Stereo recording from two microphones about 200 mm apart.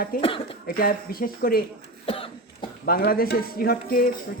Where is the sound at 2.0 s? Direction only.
25° left (ahead or behind).